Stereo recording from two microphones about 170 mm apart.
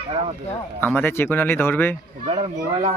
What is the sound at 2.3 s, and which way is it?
Speech, 40° right (ahead or behind).